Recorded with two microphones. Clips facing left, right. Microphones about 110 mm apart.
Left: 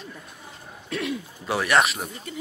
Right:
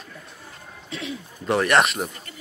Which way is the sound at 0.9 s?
5° left (ahead or behind).